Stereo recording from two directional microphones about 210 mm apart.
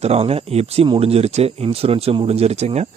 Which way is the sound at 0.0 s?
30° right (ahead or behind).